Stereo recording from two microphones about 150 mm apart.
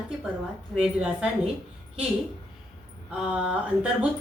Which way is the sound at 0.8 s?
5° right (ahead or behind).